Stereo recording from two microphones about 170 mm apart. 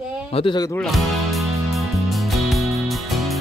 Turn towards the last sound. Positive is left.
turn(degrees=0)  # may be behind; listen again after turning